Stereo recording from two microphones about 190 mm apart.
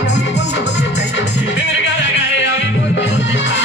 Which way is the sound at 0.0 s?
70° left (ahead or behind).